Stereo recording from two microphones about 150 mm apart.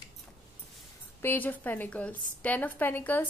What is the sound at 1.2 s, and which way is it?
A woman's voice, 15° left (ahead or behind).